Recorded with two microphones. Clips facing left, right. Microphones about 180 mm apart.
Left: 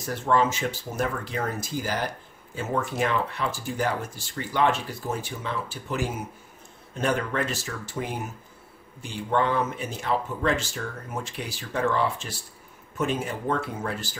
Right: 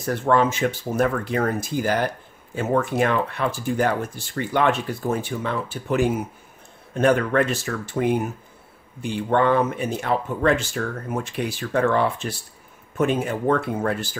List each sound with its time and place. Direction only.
0.0 s speech: 60° right (ahead or behind)